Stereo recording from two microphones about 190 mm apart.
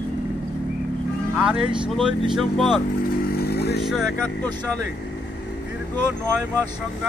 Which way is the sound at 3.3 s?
60° left (ahead or behind).